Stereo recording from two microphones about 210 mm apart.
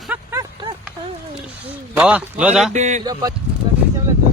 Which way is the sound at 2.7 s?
35° right (ahead or behind).